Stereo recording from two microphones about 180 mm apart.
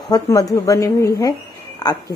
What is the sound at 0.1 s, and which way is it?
A woman's voice, 20° left (ahead or behind).